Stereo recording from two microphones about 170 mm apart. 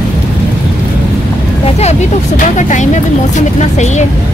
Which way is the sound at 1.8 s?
40° left (ahead or behind).